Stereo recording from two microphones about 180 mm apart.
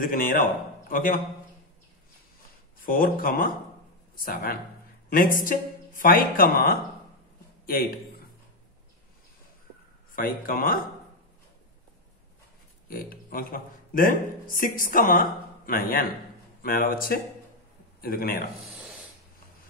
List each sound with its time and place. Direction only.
0.0 s speech: 50° left (ahead or behind)
2.8 s speech: 50° left (ahead or behind)
10.1 s speech: 50° left (ahead or behind)
12.9 s speech: 55° left (ahead or behind)
18.7 s a sound: centre (ahead or behind)